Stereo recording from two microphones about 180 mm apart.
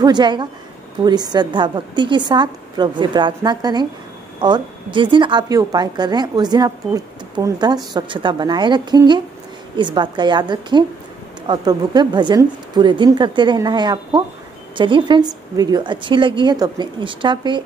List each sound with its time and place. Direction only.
0.0 s a woman's voice: 25° right (ahead or behind)